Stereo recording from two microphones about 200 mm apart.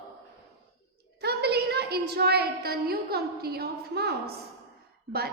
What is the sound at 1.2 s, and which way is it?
A woman's voice, 55° right (ahead or behind).